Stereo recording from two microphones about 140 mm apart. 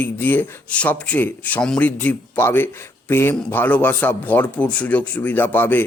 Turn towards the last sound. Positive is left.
turn(degrees=15)  # may be behind; listen again after turning